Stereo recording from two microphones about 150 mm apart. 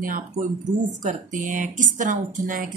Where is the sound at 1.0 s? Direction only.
55° right (ahead or behind).